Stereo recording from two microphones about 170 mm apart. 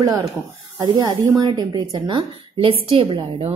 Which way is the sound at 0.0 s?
20° right (ahead or behind).